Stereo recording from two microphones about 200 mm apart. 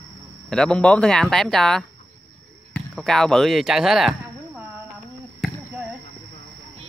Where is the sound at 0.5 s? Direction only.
5° left (ahead or behind).